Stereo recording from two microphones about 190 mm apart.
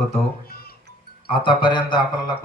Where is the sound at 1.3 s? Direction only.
25° left (ahead or behind).